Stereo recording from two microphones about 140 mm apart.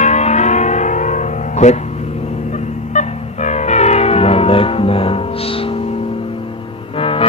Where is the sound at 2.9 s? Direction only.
55° left (ahead or behind); by 5.8 s 40° left (ahead or behind).